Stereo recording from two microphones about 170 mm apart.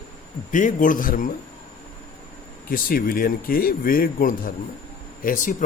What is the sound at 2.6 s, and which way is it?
Speech, 55° left (ahead or behind).